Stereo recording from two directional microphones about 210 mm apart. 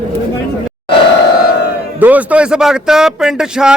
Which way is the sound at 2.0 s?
5° right (ahead or behind).